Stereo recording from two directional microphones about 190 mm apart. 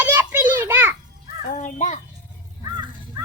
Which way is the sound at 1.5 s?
40° left (ahead or behind).